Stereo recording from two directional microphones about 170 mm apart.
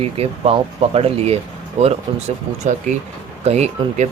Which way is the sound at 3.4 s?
40° right (ahead or behind).